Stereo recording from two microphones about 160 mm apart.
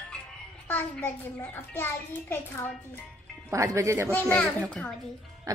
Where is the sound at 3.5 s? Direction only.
20° right (ahead or behind).